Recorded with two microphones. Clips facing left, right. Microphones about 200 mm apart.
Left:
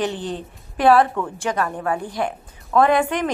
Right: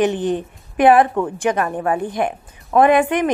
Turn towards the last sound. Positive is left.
turn(degrees=-20)  # may be behind; listen again after turning